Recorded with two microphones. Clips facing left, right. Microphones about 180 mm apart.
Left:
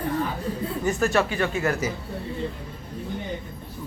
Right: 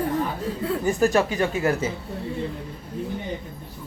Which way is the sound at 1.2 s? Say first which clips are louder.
Right 1 dB; 15° right (ahead or behind).